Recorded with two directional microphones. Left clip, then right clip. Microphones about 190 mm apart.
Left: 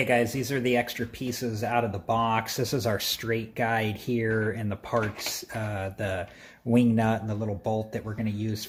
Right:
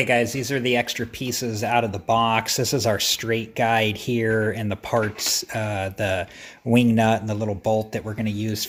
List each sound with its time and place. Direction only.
0.0 s speech: 25° right (ahead or behind)